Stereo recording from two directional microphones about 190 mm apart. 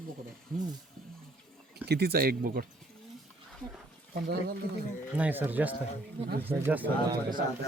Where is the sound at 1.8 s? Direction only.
60° right (ahead or behind).